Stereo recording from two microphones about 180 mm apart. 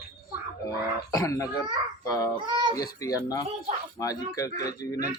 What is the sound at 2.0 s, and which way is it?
Child singing, 20° left (ahead or behind).